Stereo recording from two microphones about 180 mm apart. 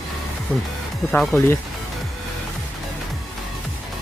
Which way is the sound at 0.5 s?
10° left (ahead or behind).